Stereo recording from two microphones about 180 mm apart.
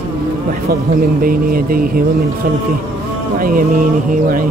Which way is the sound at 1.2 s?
55° right (ahead or behind).